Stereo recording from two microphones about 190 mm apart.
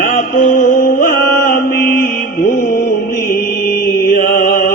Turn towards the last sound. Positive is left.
turn(degrees=50)  # may be behind; listen again after turning